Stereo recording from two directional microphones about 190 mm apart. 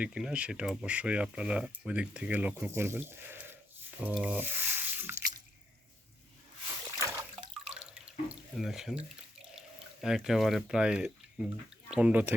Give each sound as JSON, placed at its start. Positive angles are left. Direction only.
{"t": 0.0, "sound": "speech", "side_deg": -5}
{"t": 6.9, "sound": "splash", "side_deg": -15}
{"t": 7.5, "sound": "drip", "side_deg": -5}
{"t": 8.3, "sound": "speech", "side_deg": 0}